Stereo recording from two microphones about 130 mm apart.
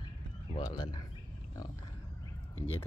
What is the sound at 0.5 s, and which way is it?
Speech, 35° left (ahead or behind).